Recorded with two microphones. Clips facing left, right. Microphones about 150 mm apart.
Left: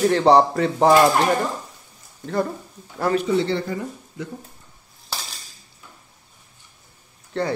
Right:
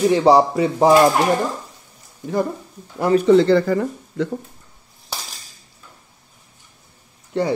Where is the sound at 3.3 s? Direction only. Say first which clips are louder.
Right 8 dB; 90° right; by 4.3 s 75° right (ahead or behind).